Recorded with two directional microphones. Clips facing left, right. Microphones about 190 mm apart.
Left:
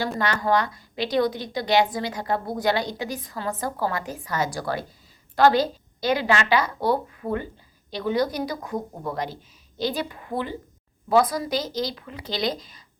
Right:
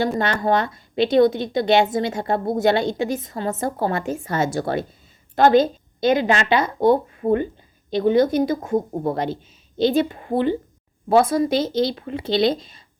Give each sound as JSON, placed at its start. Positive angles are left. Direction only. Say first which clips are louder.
{"t": 0.0, "sound": "a woman's voice", "louder": "right 5 dB", "side_deg": -25}